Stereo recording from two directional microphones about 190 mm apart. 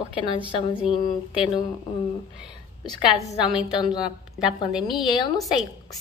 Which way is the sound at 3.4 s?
5° right (ahead or behind).